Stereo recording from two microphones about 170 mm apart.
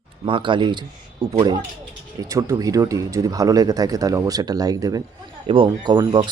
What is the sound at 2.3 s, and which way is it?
Speech, 20° right (ahead or behind).